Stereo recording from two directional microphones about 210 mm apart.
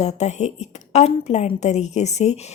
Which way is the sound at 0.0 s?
30° left (ahead or behind).